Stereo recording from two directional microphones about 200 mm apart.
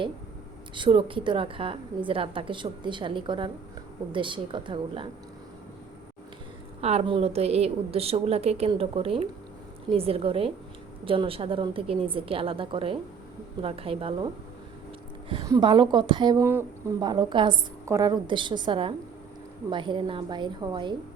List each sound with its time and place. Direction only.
0.8 s a woman's voice: 25° right (ahead or behind)
6.8 s a woman's voice: 30° right (ahead or behind)
15.3 s a woman's voice: 20° right (ahead or behind)